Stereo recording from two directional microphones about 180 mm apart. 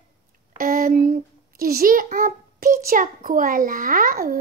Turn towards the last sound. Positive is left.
turn(degrees=-50)  # may be behind; listen again after turning